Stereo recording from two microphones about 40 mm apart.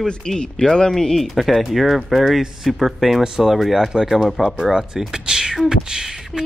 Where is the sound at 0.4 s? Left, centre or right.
Centre.